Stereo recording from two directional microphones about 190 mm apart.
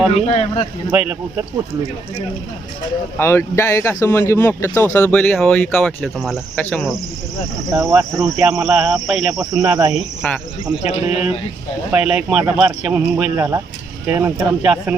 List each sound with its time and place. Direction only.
0.1 s speech: 35° left (ahead or behind)
0.9 s a man's voice: 10° right (ahead or behind)
3.2 s speech: 15° left (ahead or behind)
7.7 s a man's voice: 15° right (ahead or behind)
8.2 s speech: 5° right (ahead or behind)
9.3 s speech: 20° right (ahead or behind)
10.2 s speech: 10° left (ahead or behind)
10.8 s speech: 35° left (ahead or behind)
11.9 s a man's voice: 5° right (ahead or behind)